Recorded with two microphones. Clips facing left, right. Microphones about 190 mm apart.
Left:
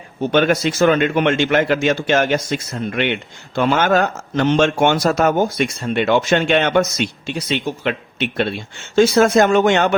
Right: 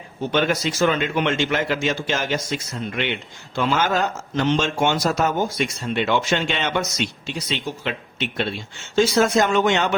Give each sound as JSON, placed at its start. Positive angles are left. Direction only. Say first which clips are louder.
{"t": 0.3, "sound": "a man's voice", "louder": "left 5 dB", "side_deg": 55}